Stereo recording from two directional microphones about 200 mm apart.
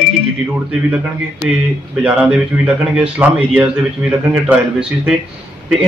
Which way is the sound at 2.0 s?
5° right (ahead or behind).